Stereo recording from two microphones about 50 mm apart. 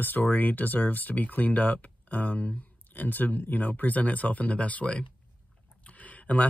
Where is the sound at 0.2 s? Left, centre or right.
Left.